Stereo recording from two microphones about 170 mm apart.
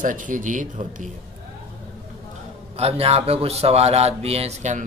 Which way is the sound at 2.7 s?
35° right (ahead or behind).